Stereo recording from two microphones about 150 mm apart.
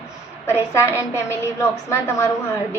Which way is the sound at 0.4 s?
15° left (ahead or behind).